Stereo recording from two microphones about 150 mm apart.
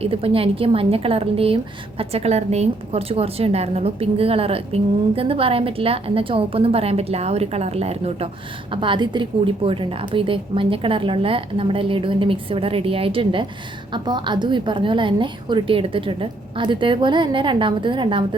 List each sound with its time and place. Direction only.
0.0 s a woman's voice: 40° right (ahead or behind)